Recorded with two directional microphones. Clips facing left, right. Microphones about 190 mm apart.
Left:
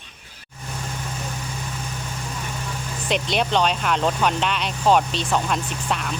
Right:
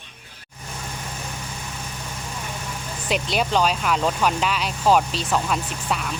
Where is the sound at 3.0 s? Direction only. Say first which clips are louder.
Left 1 dB; 5° right (ahead or behind).